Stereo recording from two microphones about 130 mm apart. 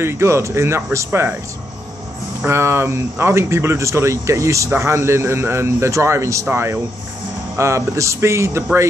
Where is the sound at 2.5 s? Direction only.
20° right (ahead or behind).